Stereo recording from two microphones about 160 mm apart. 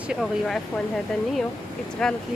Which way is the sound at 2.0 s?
5° left (ahead or behind).